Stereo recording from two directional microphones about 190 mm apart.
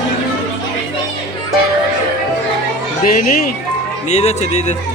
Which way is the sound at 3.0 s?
50° left (ahead or behind).